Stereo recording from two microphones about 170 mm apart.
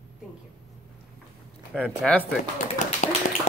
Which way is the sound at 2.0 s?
5° left (ahead or behind).